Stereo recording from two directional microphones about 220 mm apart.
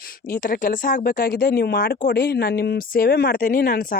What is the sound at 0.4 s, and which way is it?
Speech, 40° left (ahead or behind).